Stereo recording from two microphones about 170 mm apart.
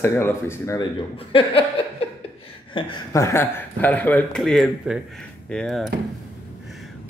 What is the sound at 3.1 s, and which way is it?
Speech, 15° left (ahead or behind).